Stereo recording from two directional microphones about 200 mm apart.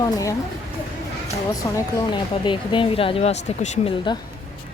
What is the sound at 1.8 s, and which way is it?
Speech, 20° left (ahead or behind).